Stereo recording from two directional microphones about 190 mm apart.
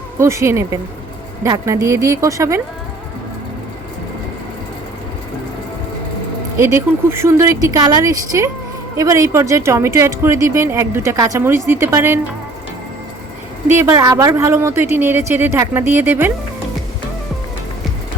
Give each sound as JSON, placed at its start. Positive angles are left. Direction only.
{"t": 0.2, "sound": "speech", "side_deg": -15}
{"t": 6.6, "sound": "speech", "side_deg": -15}
{"t": 13.7, "sound": "speech", "side_deg": -15}